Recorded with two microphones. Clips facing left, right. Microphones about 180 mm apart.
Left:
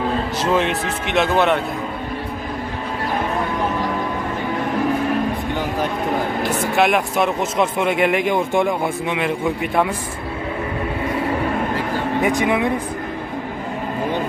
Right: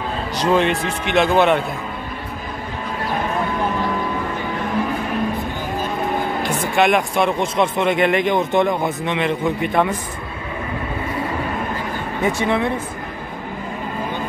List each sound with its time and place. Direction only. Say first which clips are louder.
0.4 s speech: right 4 dB; centre (ahead or behind)
6.4 s speech: right 1 dB; 5° left (ahead or behind)
12.2 s speech: even; 15° left (ahead or behind)